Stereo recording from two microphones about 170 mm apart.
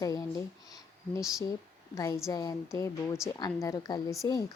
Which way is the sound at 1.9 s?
20° left (ahead or behind).